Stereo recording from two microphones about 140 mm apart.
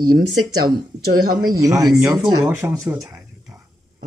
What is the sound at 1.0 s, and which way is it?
Speech, 90° right.